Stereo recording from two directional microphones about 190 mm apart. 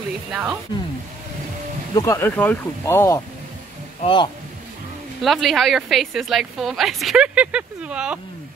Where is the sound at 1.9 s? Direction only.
15° left (ahead or behind).